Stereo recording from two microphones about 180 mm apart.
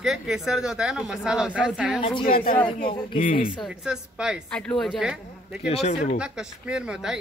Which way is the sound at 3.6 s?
5° right (ahead or behind).